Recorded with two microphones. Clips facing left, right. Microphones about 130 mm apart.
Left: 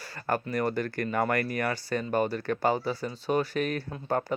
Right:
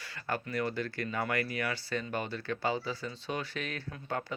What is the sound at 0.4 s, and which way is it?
Speech, 45° left (ahead or behind).